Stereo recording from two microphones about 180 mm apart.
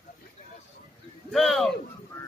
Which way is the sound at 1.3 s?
Centre (ahead or behind).